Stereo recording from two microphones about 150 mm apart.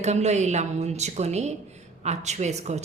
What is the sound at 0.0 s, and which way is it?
A woman's voice, 50° right (ahead or behind).